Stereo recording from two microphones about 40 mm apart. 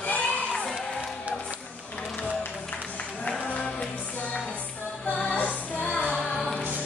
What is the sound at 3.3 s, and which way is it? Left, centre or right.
Music, left.